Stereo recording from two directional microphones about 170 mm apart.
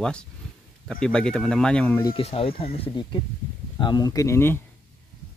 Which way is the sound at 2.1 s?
35° left (ahead or behind).